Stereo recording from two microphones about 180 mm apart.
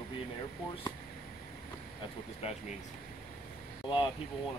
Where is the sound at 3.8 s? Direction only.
25° left (ahead or behind).